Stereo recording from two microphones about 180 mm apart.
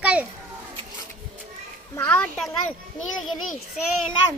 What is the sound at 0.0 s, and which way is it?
Children playing, 5° right (ahead or behind).